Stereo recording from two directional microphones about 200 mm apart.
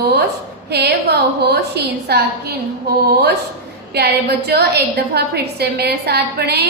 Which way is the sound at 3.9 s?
55° right (ahead or behind).